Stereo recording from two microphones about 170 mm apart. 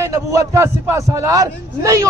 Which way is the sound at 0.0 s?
20° right (ahead or behind).